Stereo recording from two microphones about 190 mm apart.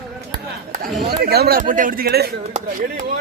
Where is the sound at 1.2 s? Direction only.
55° right (ahead or behind).